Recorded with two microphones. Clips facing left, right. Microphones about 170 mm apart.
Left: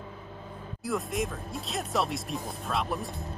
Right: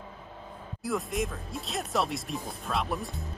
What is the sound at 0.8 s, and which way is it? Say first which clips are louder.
Speech: even; centre (ahead or behind).